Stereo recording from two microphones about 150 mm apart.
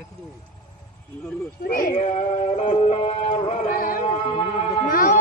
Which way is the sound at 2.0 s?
45° left (ahead or behind).